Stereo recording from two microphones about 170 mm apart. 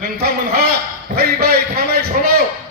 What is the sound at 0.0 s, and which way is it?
Speech, 65° right (ahead or behind).